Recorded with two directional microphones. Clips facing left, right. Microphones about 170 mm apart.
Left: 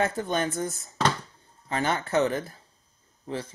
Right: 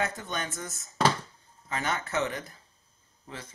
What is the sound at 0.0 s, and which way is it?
Speech, 30° left (ahead or behind).